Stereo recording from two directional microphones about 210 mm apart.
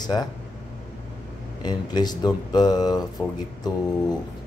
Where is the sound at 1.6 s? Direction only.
20° left (ahead or behind).